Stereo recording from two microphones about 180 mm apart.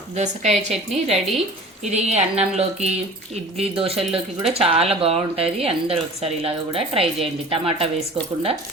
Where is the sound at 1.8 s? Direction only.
40° right (ahead or behind).